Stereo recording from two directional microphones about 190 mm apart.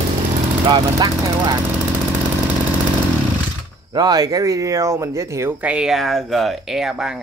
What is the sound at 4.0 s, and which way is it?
Speech, 20° right (ahead or behind).